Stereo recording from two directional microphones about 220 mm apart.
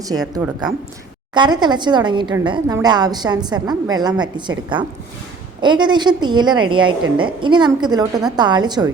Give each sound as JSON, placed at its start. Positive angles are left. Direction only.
{"t": 0.1, "sound": "a woman's voice", "side_deg": -15}